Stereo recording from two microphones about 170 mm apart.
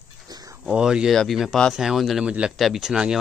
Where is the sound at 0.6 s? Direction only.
5° right (ahead or behind).